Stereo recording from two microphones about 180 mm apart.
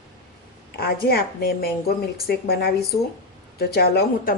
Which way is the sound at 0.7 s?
60° left (ahead or behind).